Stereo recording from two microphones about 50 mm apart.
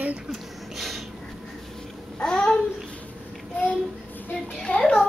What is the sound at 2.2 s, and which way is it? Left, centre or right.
Babbling, centre.